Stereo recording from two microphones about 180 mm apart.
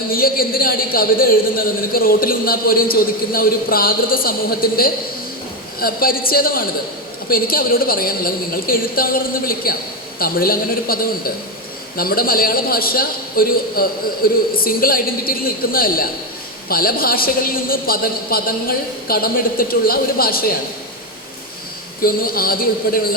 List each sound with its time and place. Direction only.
0.1 s a man's voice: 55° left (ahead or behind)
22.0 s a man's voice: 55° left (ahead or behind)